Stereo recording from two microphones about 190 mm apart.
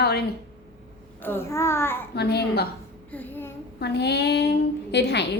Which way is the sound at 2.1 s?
60° left (ahead or behind).